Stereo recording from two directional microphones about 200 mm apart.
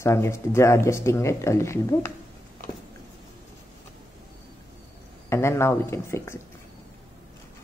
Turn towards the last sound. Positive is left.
turn(degrees=15)  # may be behind; listen again after turning